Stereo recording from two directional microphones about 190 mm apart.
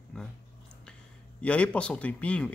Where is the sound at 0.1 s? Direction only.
5° left (ahead or behind).